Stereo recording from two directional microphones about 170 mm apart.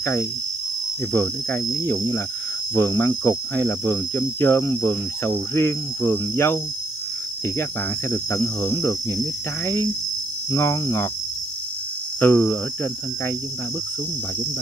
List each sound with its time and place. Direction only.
0.0 s speech: 15° left (ahead or behind)
1.9 s speech: 15° left (ahead or behind)
8.1 s speech: 15° left (ahead or behind)
10.5 s speech: 15° left (ahead or behind)
12.2 s speech: 10° left (ahead or behind)